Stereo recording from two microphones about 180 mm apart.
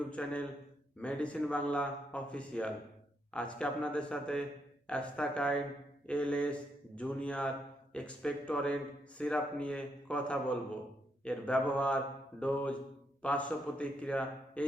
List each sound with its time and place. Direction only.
0.1 s a man's voice: 5° left (ahead or behind)